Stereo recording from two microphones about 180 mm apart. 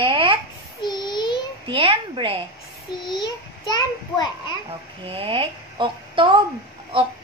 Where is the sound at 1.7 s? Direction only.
30° right (ahead or behind).